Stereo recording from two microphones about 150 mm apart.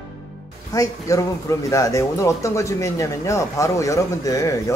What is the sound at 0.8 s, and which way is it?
Speech, 20° left (ahead or behind).